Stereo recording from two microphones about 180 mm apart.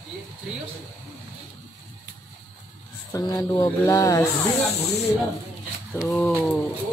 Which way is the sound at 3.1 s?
15° left (ahead or behind).